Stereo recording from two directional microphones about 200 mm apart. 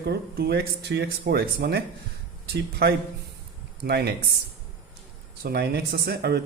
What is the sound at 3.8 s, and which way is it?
Speech, 55° right (ahead or behind).